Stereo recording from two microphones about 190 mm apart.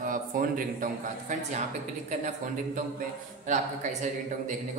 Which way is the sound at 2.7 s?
45° right (ahead or behind).